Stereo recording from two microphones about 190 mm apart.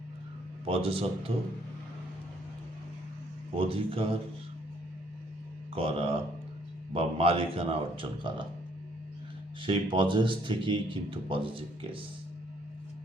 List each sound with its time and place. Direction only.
0.6 s speech: 30° right (ahead or behind)
3.6 s speech: 30° right (ahead or behind)
5.7 s speech: 30° right (ahead or behind)
9.6 s speech: 25° right (ahead or behind)